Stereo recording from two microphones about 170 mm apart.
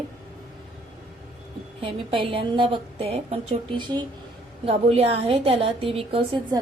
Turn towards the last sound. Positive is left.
turn(degrees=-30)  # may be behind; listen again after turning